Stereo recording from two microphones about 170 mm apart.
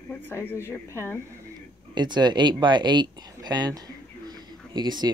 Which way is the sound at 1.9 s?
25° right (ahead or behind).